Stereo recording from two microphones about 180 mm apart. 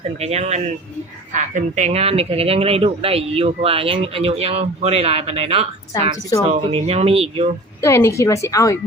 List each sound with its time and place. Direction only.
0.2 s a woman's voice: 35° right (ahead or behind)
7.8 s a woman's voice: 15° left (ahead or behind)